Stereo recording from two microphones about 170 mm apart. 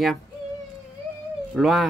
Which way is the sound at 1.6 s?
Centre (ahead or behind).